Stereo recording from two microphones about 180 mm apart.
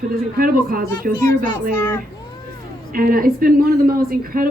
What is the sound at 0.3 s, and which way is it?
Speech, 55° right (ahead or behind).